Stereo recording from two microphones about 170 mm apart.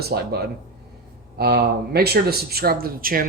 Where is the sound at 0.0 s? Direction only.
70° right (ahead or behind).